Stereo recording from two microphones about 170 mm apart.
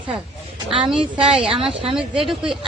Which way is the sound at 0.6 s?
30° right (ahead or behind).